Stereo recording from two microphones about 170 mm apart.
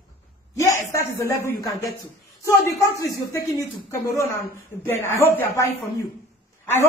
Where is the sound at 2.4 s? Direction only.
15° left (ahead or behind).